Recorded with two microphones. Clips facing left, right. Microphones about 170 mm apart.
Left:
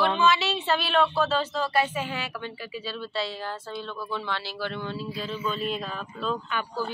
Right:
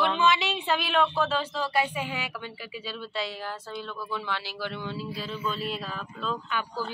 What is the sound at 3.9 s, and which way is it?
Speech, 15° left (ahead or behind).